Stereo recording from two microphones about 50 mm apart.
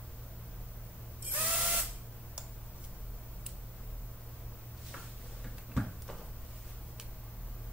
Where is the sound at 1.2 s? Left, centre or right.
Right.